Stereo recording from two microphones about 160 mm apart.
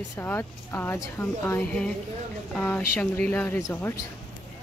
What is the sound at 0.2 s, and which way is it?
Speech, 15° left (ahead or behind).